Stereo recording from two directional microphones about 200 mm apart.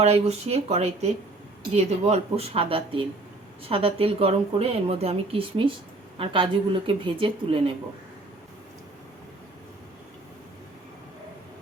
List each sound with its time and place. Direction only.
0.0 s speech: 30° right (ahead or behind)